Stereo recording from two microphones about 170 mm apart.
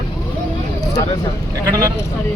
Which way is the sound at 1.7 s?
20° right (ahead or behind).